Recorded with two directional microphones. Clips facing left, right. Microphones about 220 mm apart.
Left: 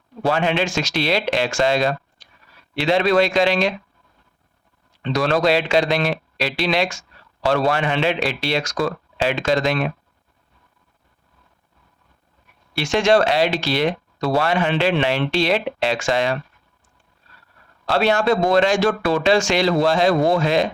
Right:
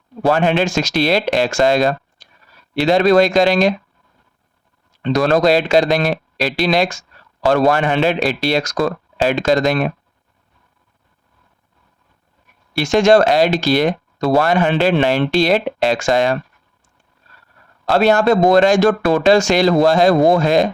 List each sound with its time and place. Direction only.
0.2 s speech: 45° right (ahead or behind)
5.0 s speech: 45° right (ahead or behind)
12.7 s speech: 45° right (ahead or behind)
17.8 s speech: 45° right (ahead or behind)